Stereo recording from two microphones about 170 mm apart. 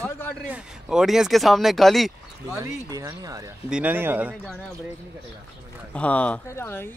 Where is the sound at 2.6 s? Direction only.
20° right (ahead or behind).